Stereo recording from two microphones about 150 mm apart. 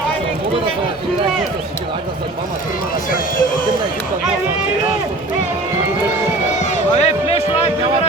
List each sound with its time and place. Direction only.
6.5 s run: 50° left (ahead or behind)